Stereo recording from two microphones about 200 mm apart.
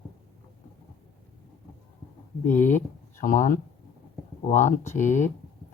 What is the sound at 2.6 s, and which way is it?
Speech, 40° left (ahead or behind).